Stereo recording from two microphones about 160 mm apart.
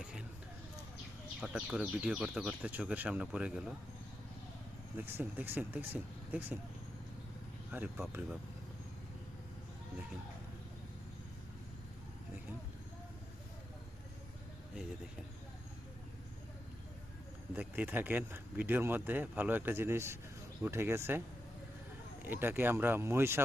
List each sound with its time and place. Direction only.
0.0 s a sound: 5° right (ahead or behind)
1.4 s a man's voice: 5° right (ahead or behind)
4.9 s a man's voice: 10° right (ahead or behind)
7.7 s a man's voice: 10° right (ahead or behind)
17.5 s a man's voice: 10° right (ahead or behind)
22.2 s a man's voice: 15° right (ahead or behind)